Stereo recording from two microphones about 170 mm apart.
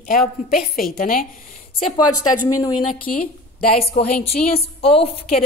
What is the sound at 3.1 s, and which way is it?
Speech, 55° left (ahead or behind).